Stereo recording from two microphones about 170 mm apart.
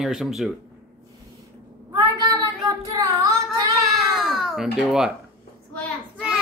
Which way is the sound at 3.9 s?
Centre (ahead or behind).